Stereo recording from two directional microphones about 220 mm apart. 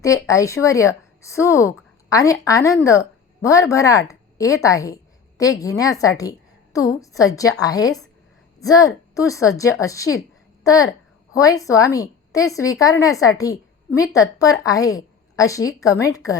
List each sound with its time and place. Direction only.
0.0 s a woman's voice: 15° left (ahead or behind)